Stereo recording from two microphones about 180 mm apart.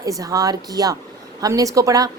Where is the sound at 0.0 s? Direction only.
20° right (ahead or behind).